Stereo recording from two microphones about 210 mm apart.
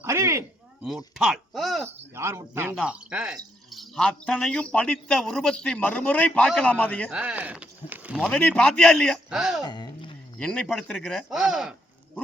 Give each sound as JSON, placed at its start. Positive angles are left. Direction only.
{"t": 0.0, "sound": "a sound", "side_deg": -15}
{"t": 0.9, "sound": "speech", "side_deg": 0}
{"t": 2.1, "sound": "speech", "side_deg": -10}
{"t": 7.2, "sound": "speech", "side_deg": -5}
{"t": 8.3, "sound": "speech", "side_deg": 5}
{"t": 9.6, "sound": "a sound", "side_deg": 20}
{"t": 10.3, "sound": "speech", "side_deg": 5}